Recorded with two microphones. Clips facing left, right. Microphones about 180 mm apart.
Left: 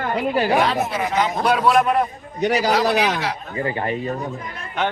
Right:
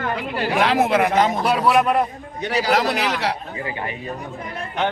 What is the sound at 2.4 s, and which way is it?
A man's voice, 45° left (ahead or behind).